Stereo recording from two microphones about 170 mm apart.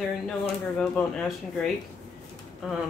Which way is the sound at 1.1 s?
Centre (ahead or behind).